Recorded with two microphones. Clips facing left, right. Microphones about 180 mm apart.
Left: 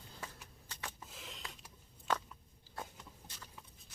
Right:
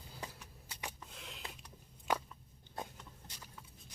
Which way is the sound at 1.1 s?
Centre (ahead or behind).